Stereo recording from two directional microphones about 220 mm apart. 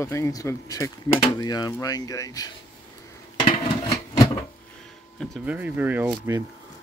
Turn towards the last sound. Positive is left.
turn(degrees=-10)  # may be behind; listen again after turning